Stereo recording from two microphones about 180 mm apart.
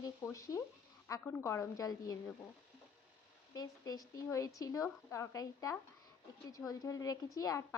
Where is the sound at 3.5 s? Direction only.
20° left (ahead or behind).